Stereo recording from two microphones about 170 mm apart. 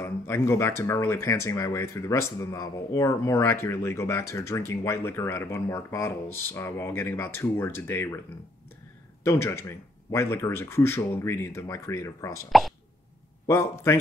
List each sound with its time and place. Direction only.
0.0 s speech: 15° left (ahead or behind)
9.2 s speech: 15° left (ahead or behind)
12.4 s speech: centre (ahead or behind)
13.5 s speech: 15° left (ahead or behind)